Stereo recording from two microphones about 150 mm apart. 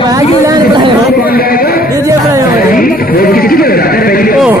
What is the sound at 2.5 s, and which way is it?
Speech, 75° left (ahead or behind).